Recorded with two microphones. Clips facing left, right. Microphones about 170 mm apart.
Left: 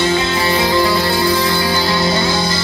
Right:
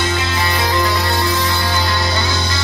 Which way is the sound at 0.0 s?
30° left (ahead or behind).